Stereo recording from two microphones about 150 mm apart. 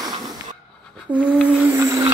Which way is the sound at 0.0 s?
25° right (ahead or behind).